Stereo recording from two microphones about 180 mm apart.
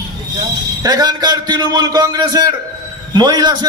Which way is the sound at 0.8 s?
20° right (ahead or behind).